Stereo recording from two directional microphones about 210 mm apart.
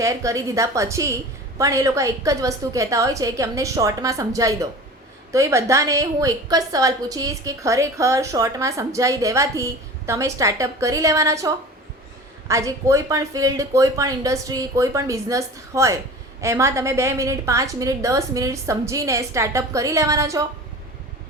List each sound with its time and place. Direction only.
0.0 s a woman's voice: 15° right (ahead or behind)